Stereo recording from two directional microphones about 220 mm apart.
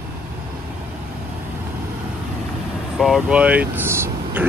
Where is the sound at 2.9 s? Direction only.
Centre (ahead or behind).